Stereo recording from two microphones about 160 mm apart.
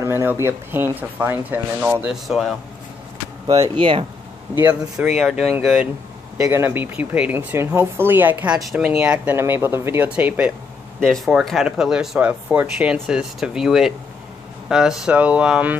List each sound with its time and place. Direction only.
0.0 s speech: 15° right (ahead or behind)
2.2 s speech: centre (ahead or behind)
3.4 s speech: 20° right (ahead or behind)
5.1 s speech: centre (ahead or behind)
6.3 s speech: 20° right (ahead or behind)